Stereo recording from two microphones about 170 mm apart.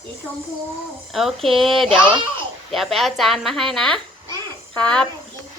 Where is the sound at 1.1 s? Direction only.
Centre (ahead or behind).